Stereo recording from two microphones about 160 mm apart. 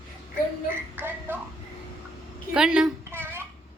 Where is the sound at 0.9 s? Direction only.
15° right (ahead or behind).